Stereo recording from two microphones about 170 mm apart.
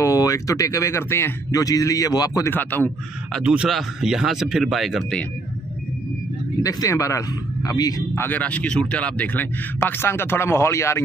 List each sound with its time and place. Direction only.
0.0 s speech: 20° left (ahead or behind)
3.3 s speech: 5° right (ahead or behind)
6.6 s speech: 20° left (ahead or behind)